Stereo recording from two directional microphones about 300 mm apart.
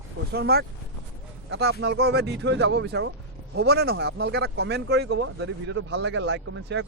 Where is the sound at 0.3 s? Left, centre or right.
Right.